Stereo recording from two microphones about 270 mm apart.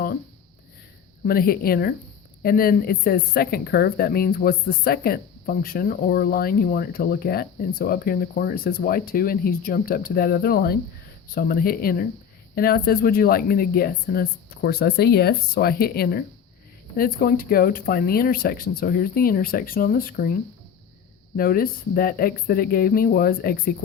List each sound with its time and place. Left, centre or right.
1.2 s speech: left